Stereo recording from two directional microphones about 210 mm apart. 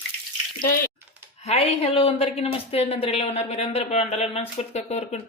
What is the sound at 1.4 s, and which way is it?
Speech, 30° left (ahead or behind).